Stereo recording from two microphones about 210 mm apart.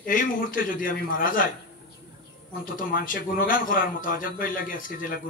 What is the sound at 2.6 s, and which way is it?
A man's voice, 40° left (ahead or behind).